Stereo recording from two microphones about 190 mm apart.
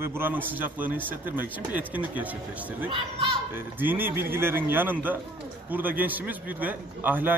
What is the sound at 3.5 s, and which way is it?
A man's voice, 10° right (ahead or behind).